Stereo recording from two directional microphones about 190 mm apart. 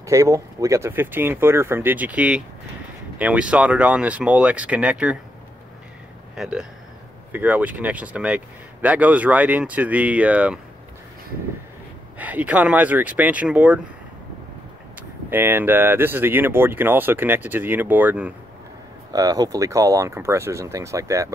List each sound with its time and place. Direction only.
0.0 s speech: 15° right (ahead or behind)
6.3 s speech: 5° right (ahead or behind)
12.2 s speech: 10° right (ahead or behind)
15.2 s speech: 10° right (ahead or behind)
19.1 s speech: 20° right (ahead or behind)